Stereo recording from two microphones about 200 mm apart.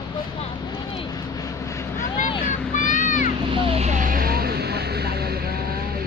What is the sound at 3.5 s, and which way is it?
Vehicle, 30° right (ahead or behind).